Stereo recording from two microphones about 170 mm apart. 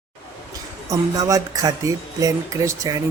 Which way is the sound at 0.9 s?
20° right (ahead or behind).